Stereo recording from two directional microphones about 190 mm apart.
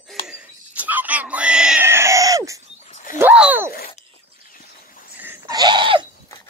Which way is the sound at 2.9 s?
45° left (ahead or behind).